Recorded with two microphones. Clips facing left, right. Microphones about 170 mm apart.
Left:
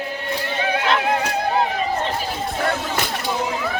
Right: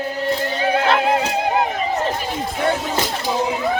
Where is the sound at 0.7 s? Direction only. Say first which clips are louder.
Right 3 dB; 30° right (ahead or behind).